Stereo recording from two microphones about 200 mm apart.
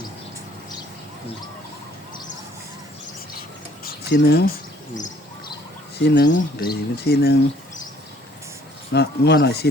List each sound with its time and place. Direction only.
3.8 s a sound: 55° left (ahead or behind)
6.0 s speech: 60° left (ahead or behind)
8.9 s speech: 55° left (ahead or behind)